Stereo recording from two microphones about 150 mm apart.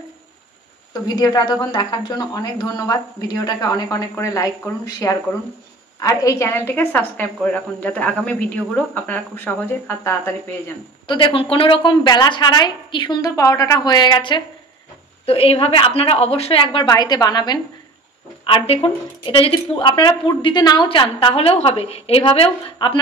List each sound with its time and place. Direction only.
1.0 s a woman's voice: 25° left (ahead or behind)
11.1 s a woman's voice: 35° left (ahead or behind)
15.2 s a woman's voice: 40° left (ahead or behind)
18.4 s a woman's voice: 35° left (ahead or behind)